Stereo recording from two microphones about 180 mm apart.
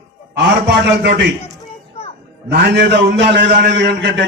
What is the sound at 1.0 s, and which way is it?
Speech, 70° right (ahead or behind).